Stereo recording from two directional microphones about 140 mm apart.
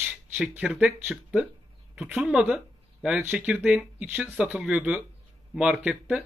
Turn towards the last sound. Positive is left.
turn(degrees=-5)  # may be behind; listen again after turning